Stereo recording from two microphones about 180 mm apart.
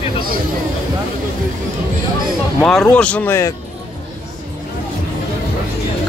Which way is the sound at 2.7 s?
5° left (ahead or behind).